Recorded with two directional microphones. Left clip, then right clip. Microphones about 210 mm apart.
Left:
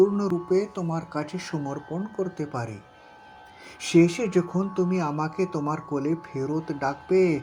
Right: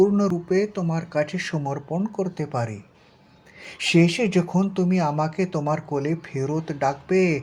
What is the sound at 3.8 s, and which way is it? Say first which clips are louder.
Speech: right 1 dB; 10° left (ahead or behind).